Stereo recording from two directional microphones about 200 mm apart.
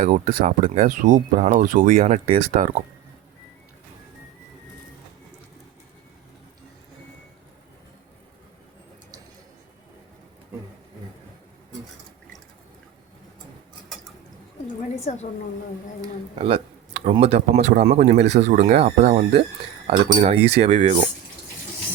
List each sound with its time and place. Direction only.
0.0 s speech: 40° right (ahead or behind)
14.9 s a sound: 35° left (ahead or behind)
16.4 s speech: 30° right (ahead or behind)